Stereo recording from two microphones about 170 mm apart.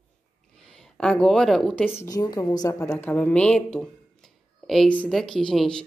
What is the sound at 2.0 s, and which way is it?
Speech, 20° left (ahead or behind).